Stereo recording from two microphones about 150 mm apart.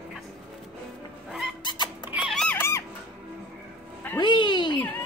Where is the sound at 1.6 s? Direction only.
30° left (ahead or behind).